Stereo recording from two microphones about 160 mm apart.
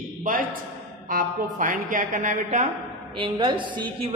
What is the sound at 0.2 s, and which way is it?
A man's voice, 55° right (ahead or behind).